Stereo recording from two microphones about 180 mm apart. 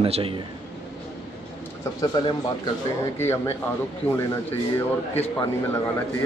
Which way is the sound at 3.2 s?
15° left (ahead or behind).